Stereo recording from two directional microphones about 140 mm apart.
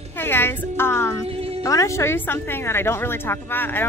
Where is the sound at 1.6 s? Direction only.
25° left (ahead or behind).